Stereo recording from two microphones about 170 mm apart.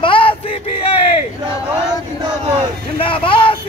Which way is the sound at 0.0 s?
30° left (ahead or behind).